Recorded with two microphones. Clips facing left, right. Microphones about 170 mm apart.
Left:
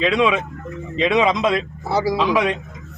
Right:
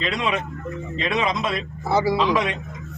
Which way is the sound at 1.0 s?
90° left.